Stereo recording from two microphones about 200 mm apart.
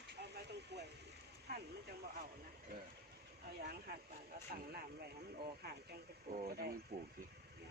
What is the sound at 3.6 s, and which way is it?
Speech, 50° right (ahead or behind).